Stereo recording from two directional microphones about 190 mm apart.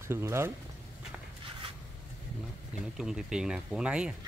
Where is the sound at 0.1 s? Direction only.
15° right (ahead or behind).